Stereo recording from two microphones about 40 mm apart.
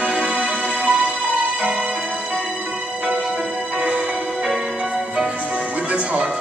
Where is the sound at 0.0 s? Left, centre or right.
Right.